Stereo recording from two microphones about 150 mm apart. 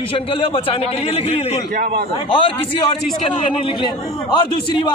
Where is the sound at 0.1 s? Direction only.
35° left (ahead or behind).